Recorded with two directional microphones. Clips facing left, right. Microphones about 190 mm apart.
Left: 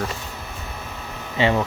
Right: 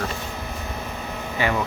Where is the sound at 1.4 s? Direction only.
25° left (ahead or behind).